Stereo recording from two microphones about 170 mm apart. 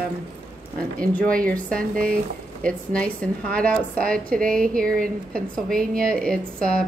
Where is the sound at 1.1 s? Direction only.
5° left (ahead or behind).